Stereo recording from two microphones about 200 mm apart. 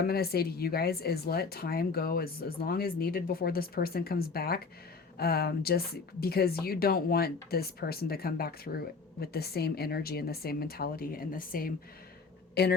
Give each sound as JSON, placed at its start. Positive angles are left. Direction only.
{"t": 0.0, "sound": "a woman's voice", "side_deg": 50}